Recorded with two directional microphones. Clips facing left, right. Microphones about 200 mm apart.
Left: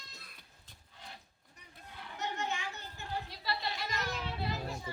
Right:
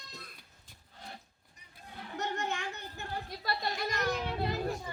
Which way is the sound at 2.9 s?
55° right (ahead or behind).